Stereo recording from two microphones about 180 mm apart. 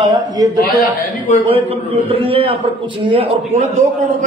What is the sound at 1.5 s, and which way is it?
A man's voice, 30° right (ahead or behind).